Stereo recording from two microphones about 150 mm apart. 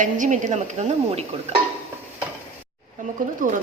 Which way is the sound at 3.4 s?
65° right (ahead or behind).